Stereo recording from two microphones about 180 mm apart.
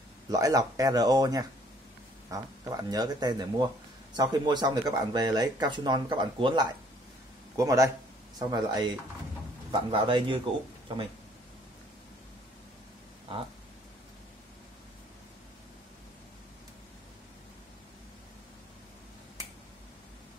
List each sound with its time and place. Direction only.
0.3 s speech: 20° right (ahead or behind)